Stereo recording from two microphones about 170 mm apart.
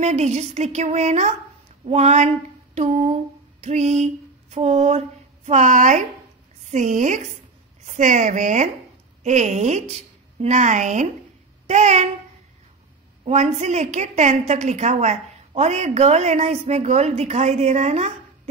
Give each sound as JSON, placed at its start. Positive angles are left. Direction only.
{"t": 0.0, "sound": "a woman's voice", "side_deg": -40}
{"t": 13.2, "sound": "a woman's voice", "side_deg": -40}